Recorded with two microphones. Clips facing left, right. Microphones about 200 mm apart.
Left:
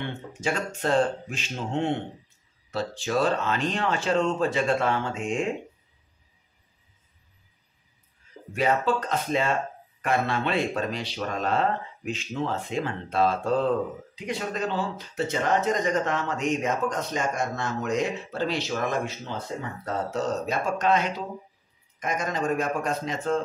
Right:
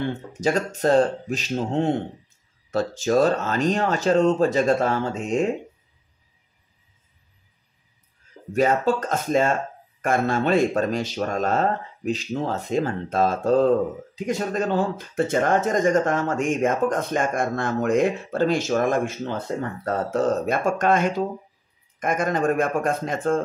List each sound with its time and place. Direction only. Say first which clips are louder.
0.0 s speech: right 7 dB; 40° right (ahead or behind)
8.5 s speech: right 4 dB; 45° right (ahead or behind)